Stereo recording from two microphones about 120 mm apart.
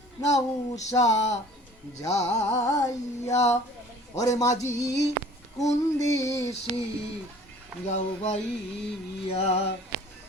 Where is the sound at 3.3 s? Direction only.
65° left (ahead or behind).